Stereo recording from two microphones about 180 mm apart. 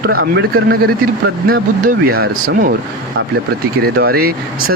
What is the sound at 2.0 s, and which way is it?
Speech, 60° right (ahead or behind).